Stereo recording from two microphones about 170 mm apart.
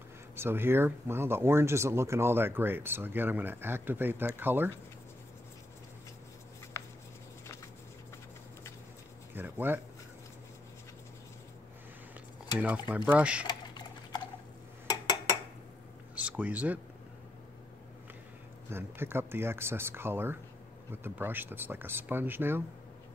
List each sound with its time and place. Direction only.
0.4 s speech: 15° right (ahead or behind)
9.3 s a sound: 10° right (ahead or behind)
12.5 s speech: 10° right (ahead or behind)
13.5 s a sound: 25° left (ahead or behind)
16.2 s speech: 10° right (ahead or behind)
18.7 s speech: 15° right (ahead or behind)